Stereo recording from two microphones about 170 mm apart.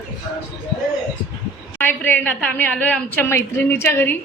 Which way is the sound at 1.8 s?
10° left (ahead or behind).